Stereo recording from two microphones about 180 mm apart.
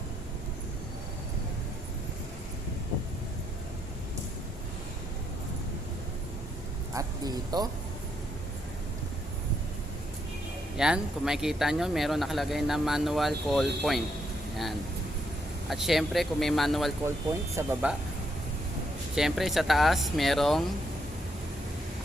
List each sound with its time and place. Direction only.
6.9 s speech: 20° right (ahead or behind)
10.8 s speech: 5° right (ahead or behind)
17.6 s speech: 15° right (ahead or behind)
19.1 s speech: centre (ahead or behind)